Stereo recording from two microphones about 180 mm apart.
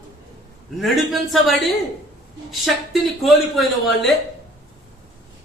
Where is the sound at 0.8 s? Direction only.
Centre (ahead or behind).